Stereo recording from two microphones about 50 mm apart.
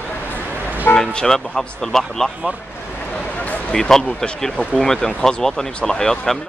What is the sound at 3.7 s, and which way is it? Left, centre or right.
Speech, centre.